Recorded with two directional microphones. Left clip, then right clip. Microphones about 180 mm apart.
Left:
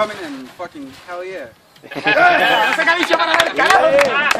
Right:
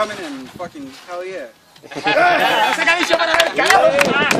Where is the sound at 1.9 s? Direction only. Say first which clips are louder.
Left 1 dB; 30° left (ahead or behind).